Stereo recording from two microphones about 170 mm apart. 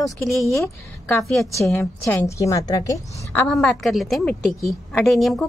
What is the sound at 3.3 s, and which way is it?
A woman's voice, 5° left (ahead or behind).